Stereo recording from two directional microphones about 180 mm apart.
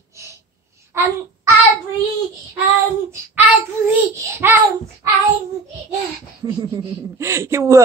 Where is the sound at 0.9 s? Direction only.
15° right (ahead or behind).